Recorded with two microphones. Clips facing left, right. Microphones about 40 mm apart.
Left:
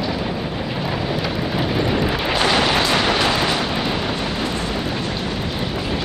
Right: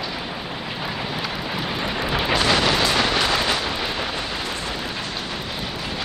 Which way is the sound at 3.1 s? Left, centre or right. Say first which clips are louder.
Left 2 dB; centre.